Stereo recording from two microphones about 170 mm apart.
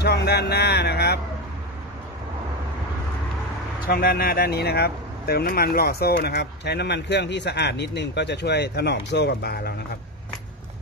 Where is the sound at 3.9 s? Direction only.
60° left (ahead or behind).